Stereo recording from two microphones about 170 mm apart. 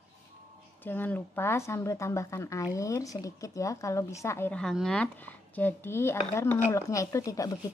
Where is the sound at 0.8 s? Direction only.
10° left (ahead or behind).